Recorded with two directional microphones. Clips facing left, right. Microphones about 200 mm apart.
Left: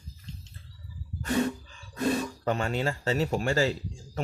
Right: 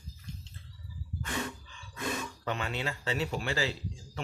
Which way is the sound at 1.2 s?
40° left (ahead or behind).